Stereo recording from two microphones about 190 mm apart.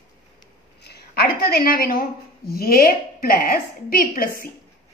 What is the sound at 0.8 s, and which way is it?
A woman's voice, 55° left (ahead or behind).